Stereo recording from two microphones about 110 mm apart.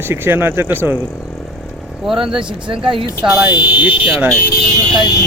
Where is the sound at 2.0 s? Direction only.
5° right (ahead or behind).